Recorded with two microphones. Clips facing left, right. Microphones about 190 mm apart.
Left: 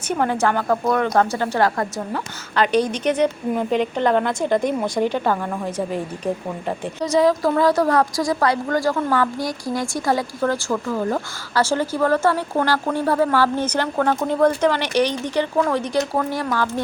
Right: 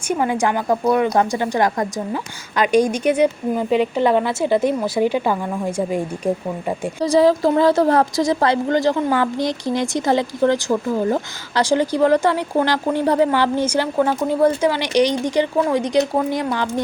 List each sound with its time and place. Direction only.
0.1 s a woman's voice: 10° right (ahead or behind)
7.0 s a woman's voice: 30° right (ahead or behind)